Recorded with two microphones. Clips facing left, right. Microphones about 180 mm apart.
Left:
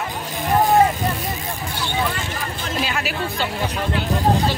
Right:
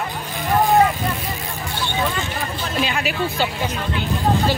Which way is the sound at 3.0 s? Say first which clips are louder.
Right 3 dB; centre (ahead or behind).